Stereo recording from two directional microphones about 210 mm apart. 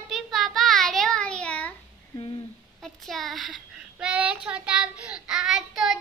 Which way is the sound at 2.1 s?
20° left (ahead or behind).